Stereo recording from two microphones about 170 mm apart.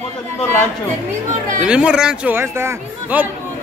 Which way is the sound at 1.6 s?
5° right (ahead or behind).